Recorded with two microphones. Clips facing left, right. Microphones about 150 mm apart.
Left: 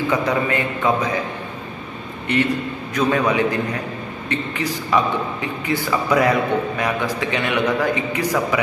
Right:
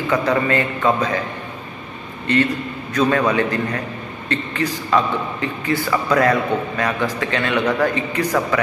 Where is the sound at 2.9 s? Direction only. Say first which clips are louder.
Right 1 dB; 15° left (ahead or behind).